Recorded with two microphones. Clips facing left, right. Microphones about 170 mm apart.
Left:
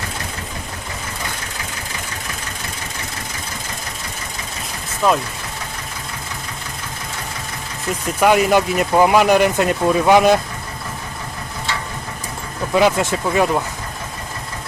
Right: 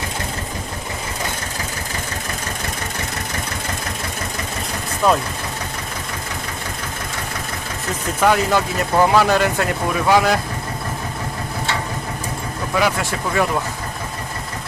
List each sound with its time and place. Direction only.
5.0 s speech: centre (ahead or behind)
8.2 s speech: 15° left (ahead or behind)
12.7 s speech: 20° left (ahead or behind)